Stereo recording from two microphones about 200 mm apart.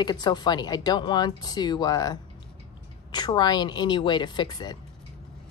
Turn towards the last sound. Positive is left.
turn(degrees=20)  # may be behind; listen again after turning